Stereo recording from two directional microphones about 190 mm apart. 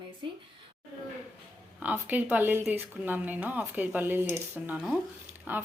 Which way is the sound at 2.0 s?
10° right (ahead or behind).